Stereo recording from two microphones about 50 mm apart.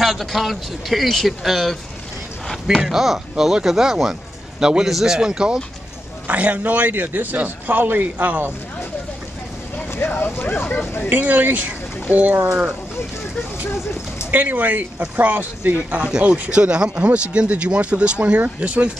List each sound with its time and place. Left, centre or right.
0.0 s a man's voice: centre
2.8 s speech: centre
6.2 s speech: right
9.9 s speech: left
11.1 s speech: right
12.4 s speech: centre
14.3 s speech: right